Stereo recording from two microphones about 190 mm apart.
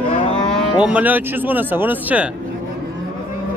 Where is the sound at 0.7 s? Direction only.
5° right (ahead or behind).